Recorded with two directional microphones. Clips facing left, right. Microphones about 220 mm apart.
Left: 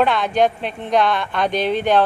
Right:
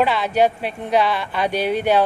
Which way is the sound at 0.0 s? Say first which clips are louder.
Left 1 dB; 5° right (ahead or behind).